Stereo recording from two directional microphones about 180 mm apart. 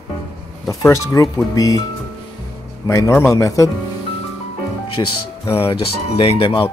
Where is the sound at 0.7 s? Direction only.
20° left (ahead or behind).